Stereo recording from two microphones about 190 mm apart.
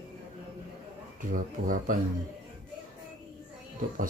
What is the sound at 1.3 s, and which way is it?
Speech, 45° right (ahead or behind).